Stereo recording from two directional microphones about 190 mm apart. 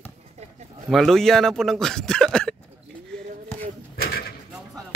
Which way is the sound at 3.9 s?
55° left (ahead or behind).